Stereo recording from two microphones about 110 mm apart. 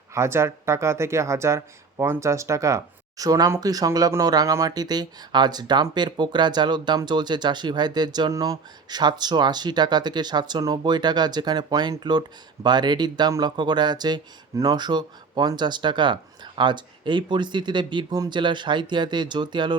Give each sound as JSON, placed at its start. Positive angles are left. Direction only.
{"t": 0.1, "sound": "speech", "side_deg": -25}